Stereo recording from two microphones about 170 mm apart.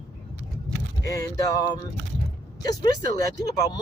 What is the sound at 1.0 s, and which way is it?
Speech, 20° left (ahead or behind).